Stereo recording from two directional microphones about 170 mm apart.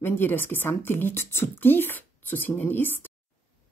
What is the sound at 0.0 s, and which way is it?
A woman's voice, 10° left (ahead or behind).